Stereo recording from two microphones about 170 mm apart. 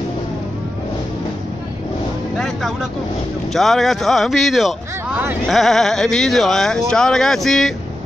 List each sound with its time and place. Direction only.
2.3 s music: centre (ahead or behind)
3.5 s speech: centre (ahead or behind)